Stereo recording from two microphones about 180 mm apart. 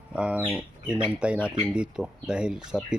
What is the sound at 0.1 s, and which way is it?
A man's voice, 5° right (ahead or behind).